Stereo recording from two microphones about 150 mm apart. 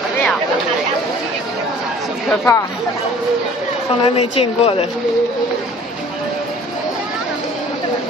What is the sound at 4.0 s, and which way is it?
Speech, 40° left (ahead or behind).